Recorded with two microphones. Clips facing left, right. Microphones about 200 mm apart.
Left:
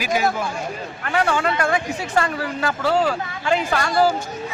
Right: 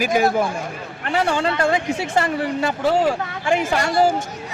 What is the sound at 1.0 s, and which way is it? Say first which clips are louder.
Speech: right 1 dB; 25° right (ahead or behind).